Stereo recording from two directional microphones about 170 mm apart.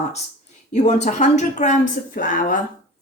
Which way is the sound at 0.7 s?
45° left (ahead or behind).